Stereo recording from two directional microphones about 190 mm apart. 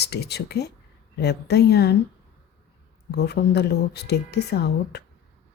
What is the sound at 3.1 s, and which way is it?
Speech, 60° left (ahead or behind).